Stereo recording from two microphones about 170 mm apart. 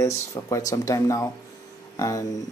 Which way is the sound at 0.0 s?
20° left (ahead or behind).